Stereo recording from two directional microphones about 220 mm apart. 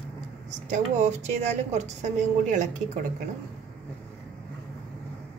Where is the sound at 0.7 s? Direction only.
30° right (ahead or behind).